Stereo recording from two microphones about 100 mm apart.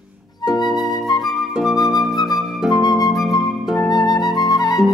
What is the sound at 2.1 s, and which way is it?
Flute, 40° left (ahead or behind).